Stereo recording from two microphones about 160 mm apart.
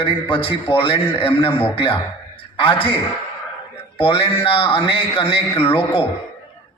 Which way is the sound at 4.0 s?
35° left (ahead or behind).